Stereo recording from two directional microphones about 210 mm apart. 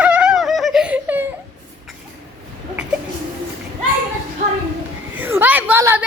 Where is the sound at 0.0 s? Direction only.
5° right (ahead or behind).